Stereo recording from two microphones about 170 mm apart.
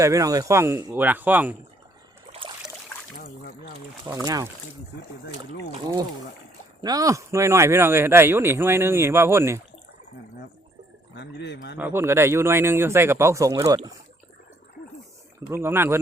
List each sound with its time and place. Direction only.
0.0 s speech: 20° right (ahead or behind)
2.3 s trickle: 25° right (ahead or behind)
3.2 s a sound: 50° left (ahead or behind)
4.0 s speech: 20° right (ahead or behind)
6.8 s speech: 20° right (ahead or behind)
11.1 s speech: 85° left
11.8 s speech: 15° right (ahead or behind)
15.4 s speech: 15° right (ahead or behind)